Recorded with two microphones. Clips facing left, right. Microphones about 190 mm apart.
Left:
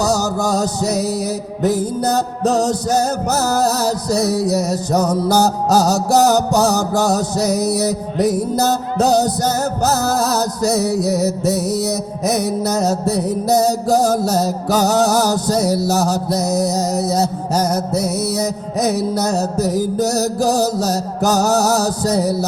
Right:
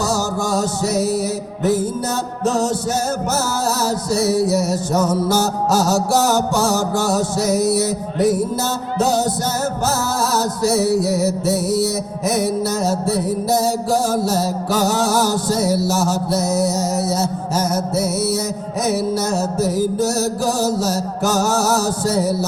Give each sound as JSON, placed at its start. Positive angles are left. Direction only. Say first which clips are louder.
{"t": 0.0, "sound": "music", "louder": "left 3 dB", "side_deg": 40}